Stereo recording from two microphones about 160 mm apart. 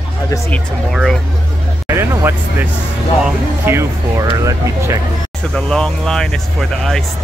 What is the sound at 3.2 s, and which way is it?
Speech, 15° right (ahead or behind).